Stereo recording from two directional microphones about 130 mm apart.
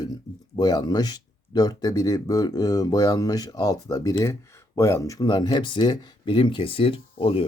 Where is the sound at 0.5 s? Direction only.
30° left (ahead or behind).